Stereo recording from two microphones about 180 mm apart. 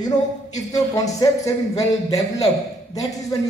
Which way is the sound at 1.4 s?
20° left (ahead or behind).